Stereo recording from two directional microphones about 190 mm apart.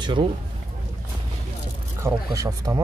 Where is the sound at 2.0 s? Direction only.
15° right (ahead or behind).